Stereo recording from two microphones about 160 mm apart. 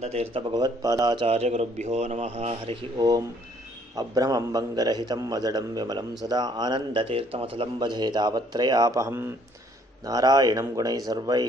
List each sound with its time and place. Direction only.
0.0 s a man's voice: 40° right (ahead or behind); by 1.2 s 25° right (ahead or behind)
1.2 s a man's voice: 40° right (ahead or behind)
3.0 s a man's voice: 20° right (ahead or behind)